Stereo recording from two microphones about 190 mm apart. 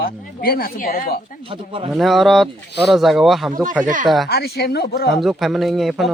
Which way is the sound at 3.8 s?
40° right (ahead or behind).